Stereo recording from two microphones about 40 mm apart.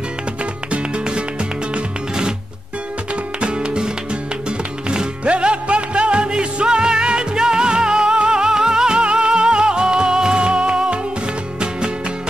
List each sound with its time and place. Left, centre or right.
0.7 s music: right
3.3 s music: right